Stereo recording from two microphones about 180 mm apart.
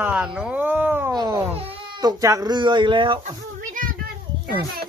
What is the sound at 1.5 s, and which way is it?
Speech, 30° right (ahead or behind).